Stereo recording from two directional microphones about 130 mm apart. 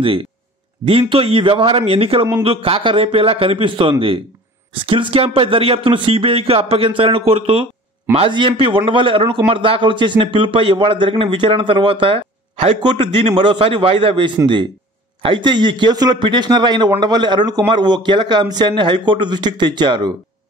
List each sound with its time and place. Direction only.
0.0 s a man's voice: 45° right (ahead or behind)